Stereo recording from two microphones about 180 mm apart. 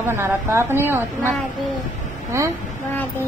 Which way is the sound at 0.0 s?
15° right (ahead or behind).